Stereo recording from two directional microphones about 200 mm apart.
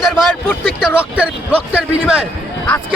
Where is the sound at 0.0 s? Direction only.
Centre (ahead or behind).